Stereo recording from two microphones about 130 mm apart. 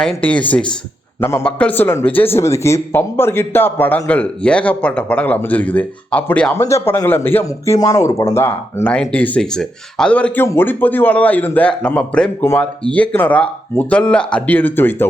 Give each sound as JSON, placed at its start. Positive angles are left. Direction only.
{"t": 0.0, "sound": "speech", "side_deg": 5}
{"t": 1.2, "sound": "speech", "side_deg": 20}
{"t": 1.5, "sound": "speech", "side_deg": 10}
{"t": 8.9, "sound": "speech", "side_deg": 10}